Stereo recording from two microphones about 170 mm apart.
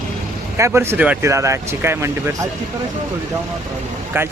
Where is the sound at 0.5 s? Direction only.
15° right (ahead or behind).